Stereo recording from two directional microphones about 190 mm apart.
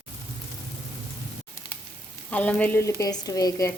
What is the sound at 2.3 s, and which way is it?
A woman's voice, 5° left (ahead or behind).